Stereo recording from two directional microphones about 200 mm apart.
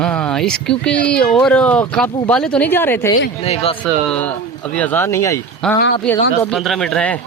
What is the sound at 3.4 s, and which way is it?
Speech, 30° left (ahead or behind).